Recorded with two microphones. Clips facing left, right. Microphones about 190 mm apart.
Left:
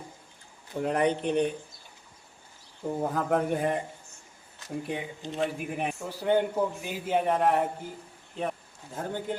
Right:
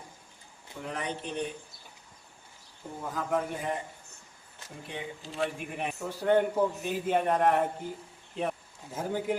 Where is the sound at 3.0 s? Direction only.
55° left (ahead or behind).